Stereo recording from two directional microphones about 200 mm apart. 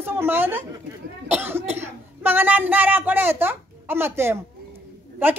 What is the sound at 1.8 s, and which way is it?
A woman's voice, 10° right (ahead or behind).